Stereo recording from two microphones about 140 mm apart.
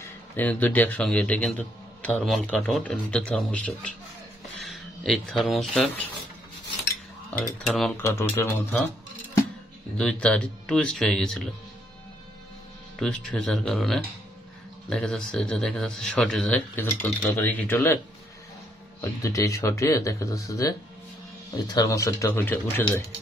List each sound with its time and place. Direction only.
0.0 s a man's voice: 10° left (ahead or behind)
7.6 s speech: centre (ahead or behind)
8.0 s speech: 20° left (ahead or behind)
9.9 s speech: 5° left (ahead or behind)
13.0 s a man's voice: 5° left (ahead or behind)